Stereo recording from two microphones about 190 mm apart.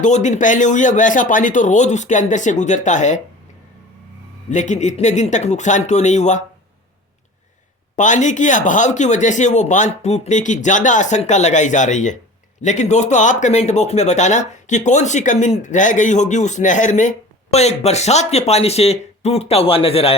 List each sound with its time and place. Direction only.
0.0 s speech: 40° left (ahead or behind)
4.4 s speech: 40° left (ahead or behind)
7.9 s speech: 40° left (ahead or behind)